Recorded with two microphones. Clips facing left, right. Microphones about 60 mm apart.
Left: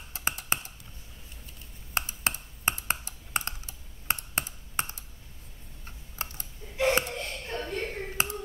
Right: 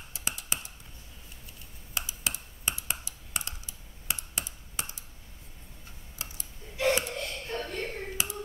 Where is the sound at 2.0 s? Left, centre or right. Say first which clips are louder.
Left 5 dB; left.